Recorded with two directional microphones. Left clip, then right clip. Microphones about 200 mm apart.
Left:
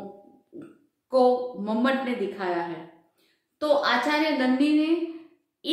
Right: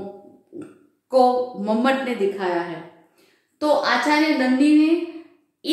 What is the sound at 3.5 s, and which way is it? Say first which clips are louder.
A woman's voice: right 3 dB; 10° left (ahead or behind).